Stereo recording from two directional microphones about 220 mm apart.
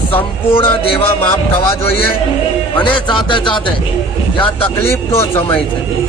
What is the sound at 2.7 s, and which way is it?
A man's voice, 20° left (ahead or behind).